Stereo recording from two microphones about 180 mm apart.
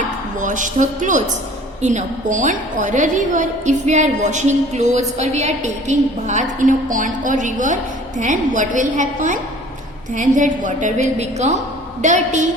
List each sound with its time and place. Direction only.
0.3 s a woman's voice: 45° right (ahead or behind)